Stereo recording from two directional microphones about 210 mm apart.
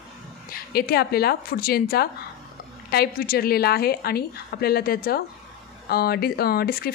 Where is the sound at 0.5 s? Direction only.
45° left (ahead or behind).